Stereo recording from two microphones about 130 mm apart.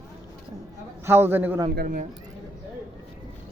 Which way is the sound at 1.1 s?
15° right (ahead or behind).